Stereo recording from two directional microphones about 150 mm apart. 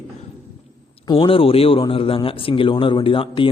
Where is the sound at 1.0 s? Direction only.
35° left (ahead or behind).